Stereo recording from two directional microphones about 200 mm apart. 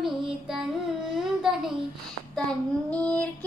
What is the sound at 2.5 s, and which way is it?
Child singing, 5° left (ahead or behind).